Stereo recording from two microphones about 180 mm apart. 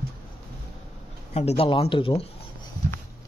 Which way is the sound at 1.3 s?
35° left (ahead or behind).